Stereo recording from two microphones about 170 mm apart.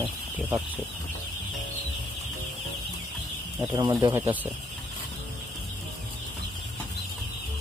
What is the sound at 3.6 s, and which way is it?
Speech, 20° right (ahead or behind).